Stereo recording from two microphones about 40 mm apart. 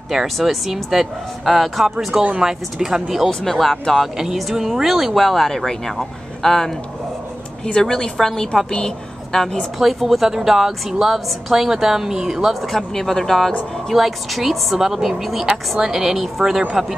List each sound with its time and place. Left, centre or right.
0.1 s speech: centre
3.3 s speech: centre
4.4 s speech: centre
7.8 s a woman's voice: centre
8.2 s a woman's voice: centre
9.8 s speech: centre
12.6 s speech: centre
13.9 s speech: centre